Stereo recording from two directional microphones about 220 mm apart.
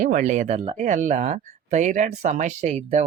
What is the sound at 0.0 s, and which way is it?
Speech, 35° right (ahead or behind).